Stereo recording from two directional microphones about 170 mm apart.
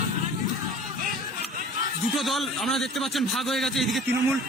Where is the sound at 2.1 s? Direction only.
Centre (ahead or behind).